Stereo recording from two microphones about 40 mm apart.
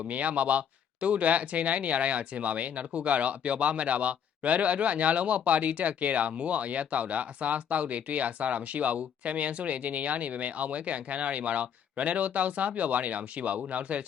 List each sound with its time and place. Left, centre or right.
0.1 s speech: right